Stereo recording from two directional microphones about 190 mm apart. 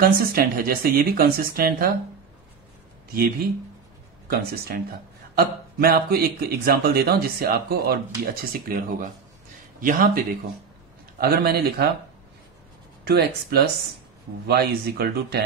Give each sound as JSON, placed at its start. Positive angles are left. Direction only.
{"t": 0.0, "sound": "speech", "side_deg": -50}
{"t": 4.3, "sound": "speech", "side_deg": -55}
{"t": 13.0, "sound": "speech", "side_deg": -60}